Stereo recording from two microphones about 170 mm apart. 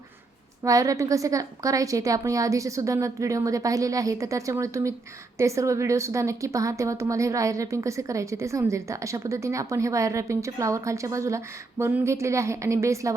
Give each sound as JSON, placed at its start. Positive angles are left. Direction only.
{"t": 0.6, "sound": "a woman's voice", "side_deg": -20}